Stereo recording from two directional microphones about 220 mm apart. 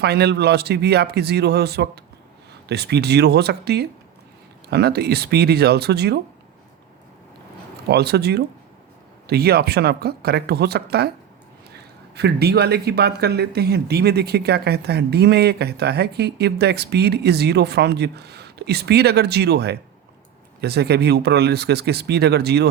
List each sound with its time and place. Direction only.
0.0 s speech: 45° right (ahead or behind)
7.9 s speech: 45° right (ahead or behind)
12.1 s speech: 45° right (ahead or behind)